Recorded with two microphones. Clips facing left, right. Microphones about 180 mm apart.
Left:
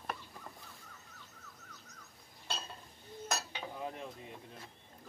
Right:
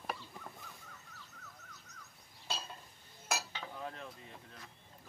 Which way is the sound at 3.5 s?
15° left (ahead or behind).